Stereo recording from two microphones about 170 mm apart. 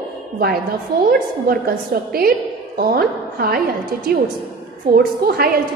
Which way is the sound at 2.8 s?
60° right (ahead or behind).